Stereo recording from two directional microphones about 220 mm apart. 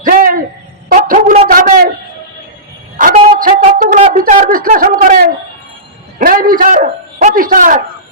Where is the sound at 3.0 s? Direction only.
40° right (ahead or behind).